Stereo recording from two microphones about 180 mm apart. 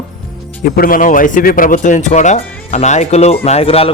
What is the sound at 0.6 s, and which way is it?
Speech, 55° left (ahead or behind).